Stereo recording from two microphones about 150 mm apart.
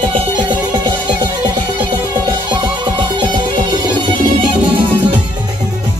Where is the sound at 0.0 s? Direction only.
35° right (ahead or behind).